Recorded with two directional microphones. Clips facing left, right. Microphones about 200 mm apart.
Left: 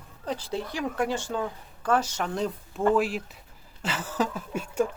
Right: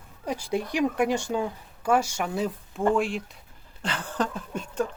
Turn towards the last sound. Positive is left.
turn(degrees=10)  # may be behind; listen again after turning